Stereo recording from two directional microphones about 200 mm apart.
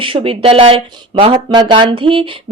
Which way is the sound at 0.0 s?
25° right (ahead or behind).